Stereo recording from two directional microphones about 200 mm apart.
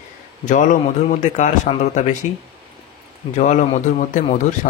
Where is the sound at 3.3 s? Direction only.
35° left (ahead or behind).